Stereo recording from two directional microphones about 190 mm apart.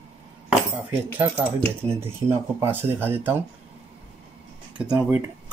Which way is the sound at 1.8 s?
15° right (ahead or behind).